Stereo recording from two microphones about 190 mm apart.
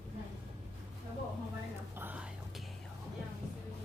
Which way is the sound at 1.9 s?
10° right (ahead or behind).